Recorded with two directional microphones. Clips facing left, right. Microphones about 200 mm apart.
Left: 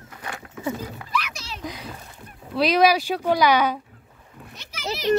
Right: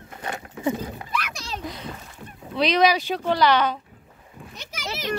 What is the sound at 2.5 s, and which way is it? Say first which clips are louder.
Speech: left 1 dB; 5° left (ahead or behind).